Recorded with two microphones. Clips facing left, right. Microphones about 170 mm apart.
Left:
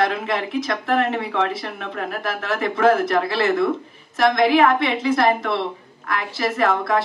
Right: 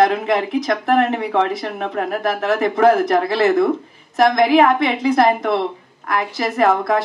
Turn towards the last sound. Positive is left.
turn(degrees=-20)  # may be behind; listen again after turning